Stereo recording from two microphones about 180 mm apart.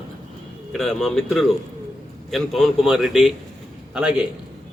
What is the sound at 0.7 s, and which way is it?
Speech, centre (ahead or behind).